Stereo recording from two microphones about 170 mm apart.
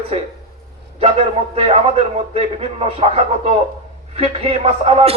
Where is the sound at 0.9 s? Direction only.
35° right (ahead or behind).